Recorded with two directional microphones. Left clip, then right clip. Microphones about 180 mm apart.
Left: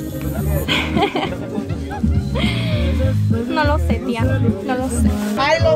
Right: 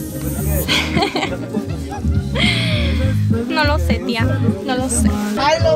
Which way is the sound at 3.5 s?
5° left (ahead or behind).